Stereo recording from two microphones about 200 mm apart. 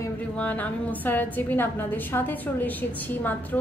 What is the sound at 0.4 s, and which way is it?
A woman's voice, 10° left (ahead or behind).